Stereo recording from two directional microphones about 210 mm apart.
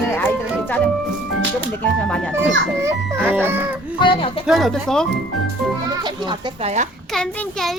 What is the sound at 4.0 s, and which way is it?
Speech, 25° left (ahead or behind).